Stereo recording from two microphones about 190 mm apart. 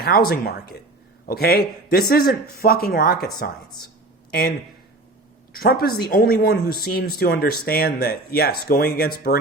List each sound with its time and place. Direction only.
0.0 s speech: 55° left (ahead or behind)
4.3 s speech: 55° left (ahead or behind)
5.5 s speech: 55° left (ahead or behind)